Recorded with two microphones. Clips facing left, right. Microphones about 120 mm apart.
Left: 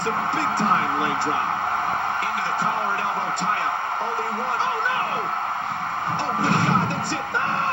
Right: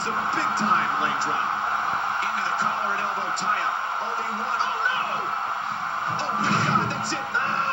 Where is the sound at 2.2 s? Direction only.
50° left (ahead or behind).